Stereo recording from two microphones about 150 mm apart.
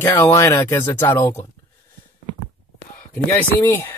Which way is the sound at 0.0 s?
15° left (ahead or behind).